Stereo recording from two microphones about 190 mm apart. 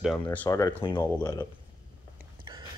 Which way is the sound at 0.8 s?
25° left (ahead or behind).